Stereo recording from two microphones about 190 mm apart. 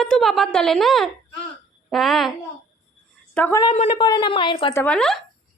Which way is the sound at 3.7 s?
35° left (ahead or behind).